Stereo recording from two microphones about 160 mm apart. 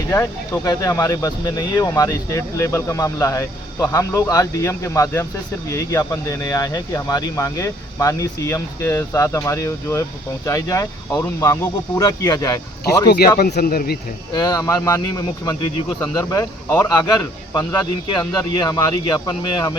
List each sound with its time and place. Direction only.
0.1 s speech: 20° left (ahead or behind)
13.1 s speech: 70° left (ahead or behind)
14.3 s speech: 25° left (ahead or behind)